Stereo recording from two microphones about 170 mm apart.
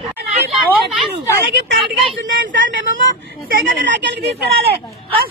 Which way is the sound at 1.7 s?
90° right.